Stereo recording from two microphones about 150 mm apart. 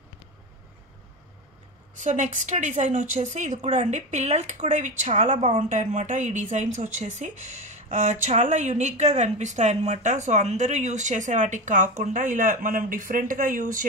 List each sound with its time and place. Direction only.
2.0 s speech: 55° right (ahead or behind)